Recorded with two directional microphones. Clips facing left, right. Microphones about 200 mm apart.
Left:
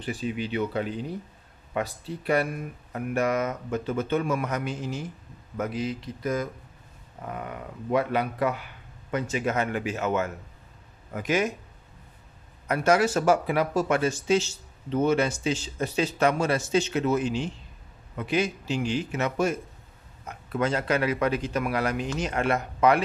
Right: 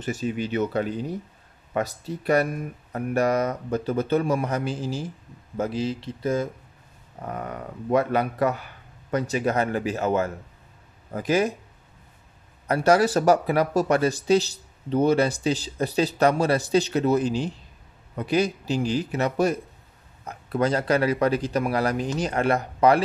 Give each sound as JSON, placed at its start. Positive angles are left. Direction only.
{"t": 0.0, "sound": "speech", "side_deg": -45}
{"t": 7.2, "sound": "speech", "side_deg": -40}
{"t": 12.6, "sound": "speech", "side_deg": -35}